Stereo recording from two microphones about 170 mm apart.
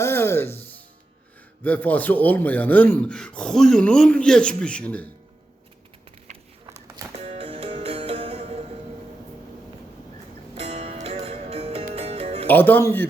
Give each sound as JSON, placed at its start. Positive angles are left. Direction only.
{"t": 0.0, "sound": "music", "side_deg": 15}
{"t": 1.6, "sound": "speech", "side_deg": 10}
{"t": 6.7, "sound": "a sound", "side_deg": -15}
{"t": 7.2, "sound": "music", "side_deg": -35}
{"t": 10.6, "sound": "music", "side_deg": -40}
{"t": 12.5, "sound": "speech", "side_deg": 10}